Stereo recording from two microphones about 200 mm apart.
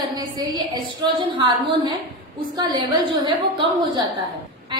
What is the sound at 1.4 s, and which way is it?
Speech, 25° right (ahead or behind).